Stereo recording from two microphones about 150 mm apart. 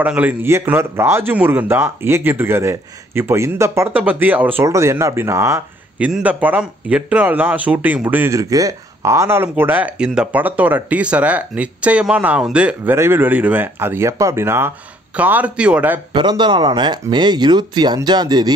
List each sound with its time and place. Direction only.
0.0 s a man's voice: 10° right (ahead or behind)
5.9 s a man's voice: 10° right (ahead or behind)
16.1 s speech: 30° right (ahead or behind)